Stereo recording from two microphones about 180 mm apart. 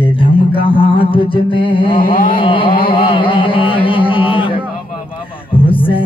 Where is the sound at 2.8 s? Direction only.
30° left (ahead or behind).